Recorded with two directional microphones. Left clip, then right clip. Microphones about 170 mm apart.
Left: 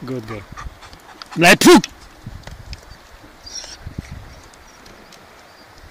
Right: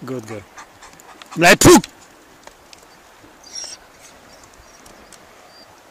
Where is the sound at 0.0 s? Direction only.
10° right (ahead or behind).